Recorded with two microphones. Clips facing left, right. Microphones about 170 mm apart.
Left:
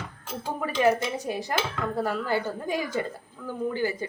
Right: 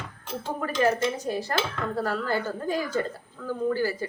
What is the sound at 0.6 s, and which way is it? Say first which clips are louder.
Dishes: left 1 dB; 15° left (ahead or behind).